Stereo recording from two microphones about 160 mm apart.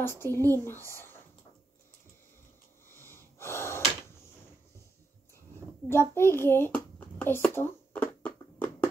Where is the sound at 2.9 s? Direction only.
15° left (ahead or behind).